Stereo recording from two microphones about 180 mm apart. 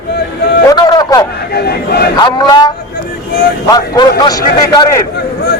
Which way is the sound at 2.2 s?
25° left (ahead or behind).